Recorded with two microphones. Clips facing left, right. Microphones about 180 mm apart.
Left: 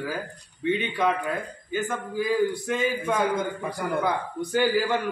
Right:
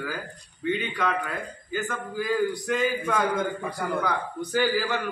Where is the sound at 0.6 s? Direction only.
20° left (ahead or behind).